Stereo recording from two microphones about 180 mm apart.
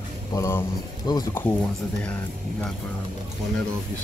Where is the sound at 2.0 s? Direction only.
5° left (ahead or behind).